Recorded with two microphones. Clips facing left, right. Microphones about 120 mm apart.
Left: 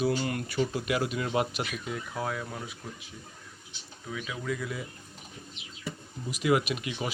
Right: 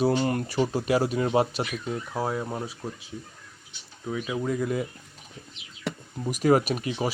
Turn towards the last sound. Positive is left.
turn(degrees=-35)  # may be behind; listen again after turning